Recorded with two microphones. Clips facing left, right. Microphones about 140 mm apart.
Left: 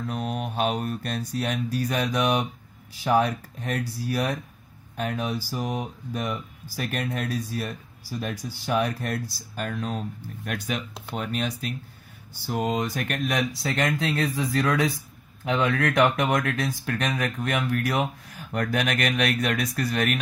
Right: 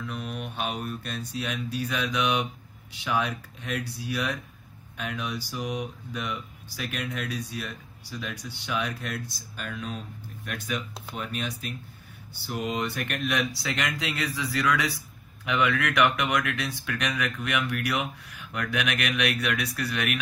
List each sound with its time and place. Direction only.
0.0 s mantra: 35° left (ahead or behind); by 1.2 s 55° left (ahead or behind)
1.3 s speech: 60° left (ahead or behind)
3.0 s speech: 35° left (ahead or behind)
3.3 s speech: 55° left (ahead or behind)
4.9 s speech: 40° left (ahead or behind)
8.1 s speech: 40° left (ahead or behind)
8.6 s speech: 50° left (ahead or behind)
12.9 s speech: 40° left (ahead or behind)